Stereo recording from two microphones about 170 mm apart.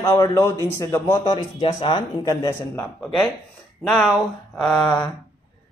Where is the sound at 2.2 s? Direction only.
15° left (ahead or behind).